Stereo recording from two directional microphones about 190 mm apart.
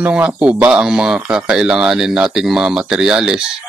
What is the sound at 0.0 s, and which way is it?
Speech, 5° right (ahead or behind).